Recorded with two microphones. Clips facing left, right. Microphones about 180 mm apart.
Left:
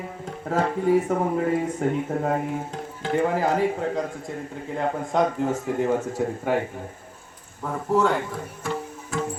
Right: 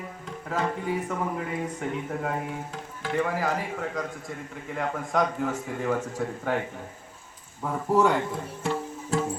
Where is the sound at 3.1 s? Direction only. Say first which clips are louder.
Left 5 dB; 30° left (ahead or behind).